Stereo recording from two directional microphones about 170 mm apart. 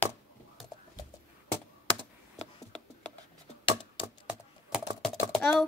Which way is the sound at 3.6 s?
30° left (ahead or behind).